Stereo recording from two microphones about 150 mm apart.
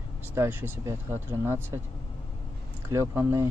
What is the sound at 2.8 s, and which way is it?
Speech, 20° right (ahead or behind).